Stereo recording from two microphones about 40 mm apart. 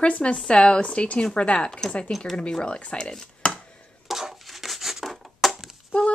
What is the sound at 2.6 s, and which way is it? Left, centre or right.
Speech, left.